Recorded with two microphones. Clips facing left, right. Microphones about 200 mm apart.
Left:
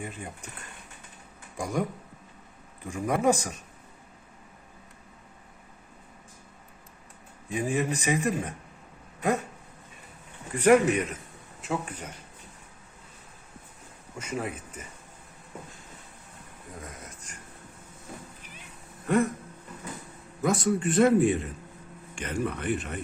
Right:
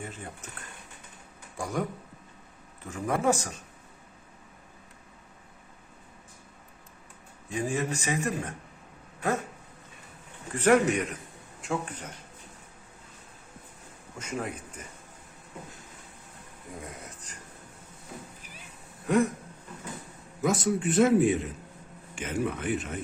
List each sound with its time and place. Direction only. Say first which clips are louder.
0.0 s speech: left 2 dB; 15° left (ahead or behind)
1.5 s speech: left 2 dB; 15° left (ahead or behind)
2.8 s speech: left 2 dB; 15° left (ahead or behind)
7.5 s speech: left 2 dB; 15° left (ahead or behind)
10.6 s speech: left 2 dB; 10° left (ahead or behind)
14.2 s a man's voice: left 1 dB; 5° left (ahead or behind)
19.0 s a sound: even; centre (ahead or behind)
20.4 s a man's voice: left 1 dB; centre (ahead or behind)